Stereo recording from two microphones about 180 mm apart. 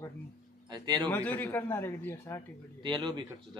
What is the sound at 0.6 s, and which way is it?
Speech, 25° right (ahead or behind).